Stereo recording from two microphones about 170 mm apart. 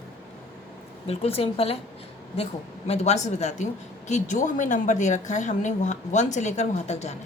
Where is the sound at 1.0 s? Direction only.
35° left (ahead or behind).